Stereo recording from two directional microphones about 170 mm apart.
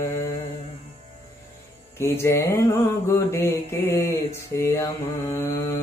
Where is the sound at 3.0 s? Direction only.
15° left (ahead or behind).